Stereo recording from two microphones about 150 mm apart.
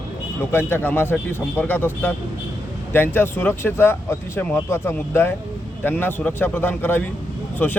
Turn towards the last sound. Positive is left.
turn(degrees=10)  # may be behind; listen again after turning